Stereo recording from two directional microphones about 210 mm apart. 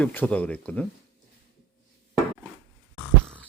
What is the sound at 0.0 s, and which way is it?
Speech, 10° left (ahead or behind).